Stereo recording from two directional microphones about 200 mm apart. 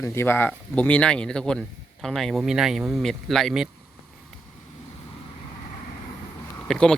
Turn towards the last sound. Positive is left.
turn(degrees=5)  # may be behind; listen again after turning